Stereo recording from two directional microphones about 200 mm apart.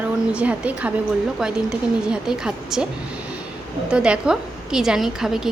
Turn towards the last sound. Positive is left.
turn(degrees=0)  # may be behind; listen again after turning